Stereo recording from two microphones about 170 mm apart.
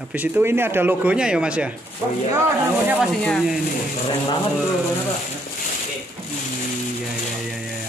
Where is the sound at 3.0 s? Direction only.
Centre (ahead or behind).